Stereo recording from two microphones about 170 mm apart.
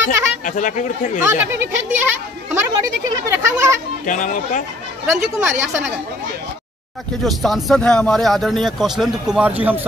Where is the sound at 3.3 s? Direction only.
15° right (ahead or behind).